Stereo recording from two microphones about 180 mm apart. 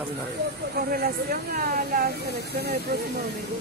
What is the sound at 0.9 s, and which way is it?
Speech, 50° right (ahead or behind).